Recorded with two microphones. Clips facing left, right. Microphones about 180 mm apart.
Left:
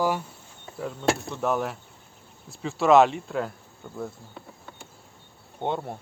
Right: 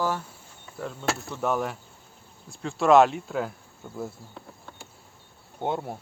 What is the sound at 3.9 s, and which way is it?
Insect, centre (ahead or behind).